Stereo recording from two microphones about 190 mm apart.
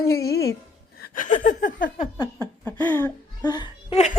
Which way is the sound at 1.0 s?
45° left (ahead or behind).